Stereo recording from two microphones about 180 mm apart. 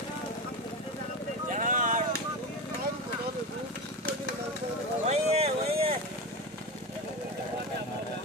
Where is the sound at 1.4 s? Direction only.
45° right (ahead or behind).